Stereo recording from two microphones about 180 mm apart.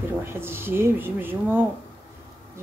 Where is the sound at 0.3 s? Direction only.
15° right (ahead or behind).